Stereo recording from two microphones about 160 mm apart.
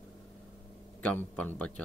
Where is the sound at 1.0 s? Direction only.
10° left (ahead or behind).